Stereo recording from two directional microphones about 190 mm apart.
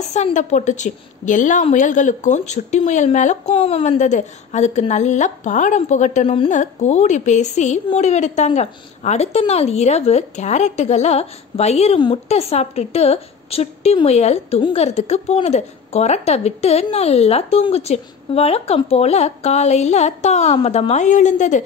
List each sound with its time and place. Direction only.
0.1 s a woman's voice: 40° left (ahead or behind)